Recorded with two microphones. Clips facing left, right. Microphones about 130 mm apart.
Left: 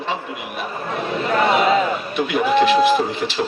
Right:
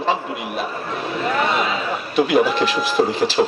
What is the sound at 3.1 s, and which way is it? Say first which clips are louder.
Speech: right 4 dB; 35° right (ahead or behind).